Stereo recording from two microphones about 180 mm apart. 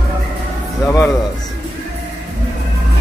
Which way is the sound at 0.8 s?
15° left (ahead or behind).